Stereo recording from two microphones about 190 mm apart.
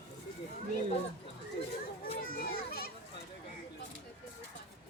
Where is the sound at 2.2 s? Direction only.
50° left (ahead or behind).